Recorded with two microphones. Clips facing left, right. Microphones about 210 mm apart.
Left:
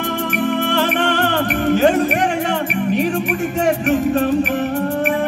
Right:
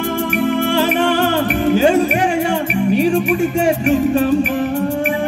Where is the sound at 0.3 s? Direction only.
10° right (ahead or behind).